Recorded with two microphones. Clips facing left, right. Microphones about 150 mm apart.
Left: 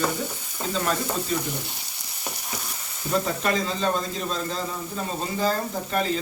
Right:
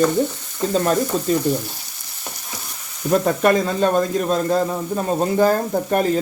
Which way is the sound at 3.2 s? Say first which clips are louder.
Right 9 dB; 55° right (ahead or behind).